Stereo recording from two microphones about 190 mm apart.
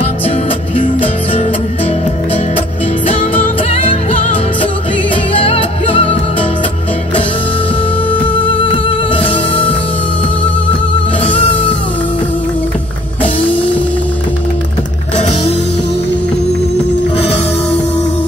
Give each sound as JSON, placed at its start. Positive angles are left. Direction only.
{"t": 0.7, "sound": "music", "side_deg": 30}
{"t": 5.3, "sound": "music", "side_deg": 30}
{"t": 8.5, "sound": "music", "side_deg": 25}
{"t": 11.2, "sound": "music", "side_deg": 30}